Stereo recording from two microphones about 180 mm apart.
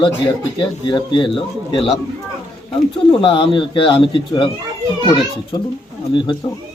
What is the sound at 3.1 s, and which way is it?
Speech, 30° left (ahead or behind).